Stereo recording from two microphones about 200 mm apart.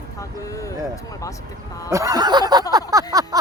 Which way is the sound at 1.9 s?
15° right (ahead or behind).